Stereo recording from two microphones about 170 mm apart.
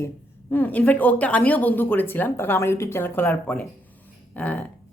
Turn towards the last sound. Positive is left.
turn(degrees=10)  # may be behind; listen again after turning